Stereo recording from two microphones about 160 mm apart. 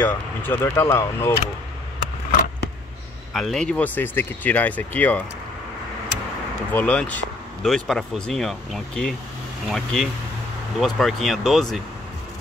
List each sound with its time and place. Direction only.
0.0 s speech: 15° left (ahead or behind)
3.3 s speech: centre (ahead or behind)
6.7 s speech: 10° left (ahead or behind)